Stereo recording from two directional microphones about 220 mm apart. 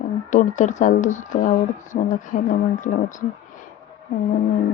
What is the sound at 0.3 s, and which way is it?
Speech, 35° left (ahead or behind).